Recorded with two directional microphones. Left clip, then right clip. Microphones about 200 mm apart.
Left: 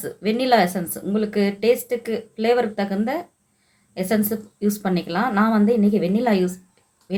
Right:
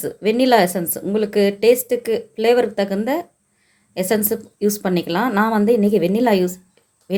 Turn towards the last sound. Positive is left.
turn(degrees=-25)  # may be behind; listen again after turning